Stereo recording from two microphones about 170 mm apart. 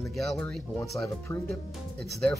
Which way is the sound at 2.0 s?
Centre (ahead or behind).